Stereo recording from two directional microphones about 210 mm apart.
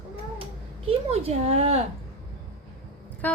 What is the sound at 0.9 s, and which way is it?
Speech, 30° right (ahead or behind).